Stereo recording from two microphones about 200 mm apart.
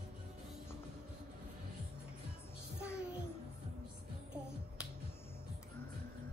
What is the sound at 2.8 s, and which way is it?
Music, 5° right (ahead or behind).